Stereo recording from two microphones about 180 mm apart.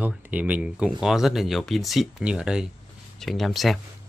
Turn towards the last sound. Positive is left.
turn(degrees=0)  # may be behind; listen again after turning